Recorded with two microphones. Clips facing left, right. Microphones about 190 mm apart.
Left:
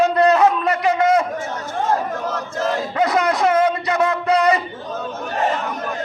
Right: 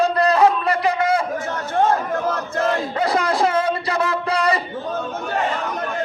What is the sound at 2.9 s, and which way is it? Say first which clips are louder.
Music: left 1 dB; 30° right (ahead or behind).